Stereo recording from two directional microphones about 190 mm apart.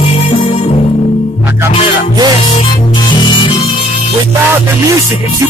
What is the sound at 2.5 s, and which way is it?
Music, 25° left (ahead or behind).